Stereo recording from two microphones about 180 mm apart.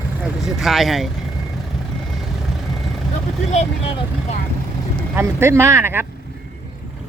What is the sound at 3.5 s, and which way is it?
Speech, 40° left (ahead or behind).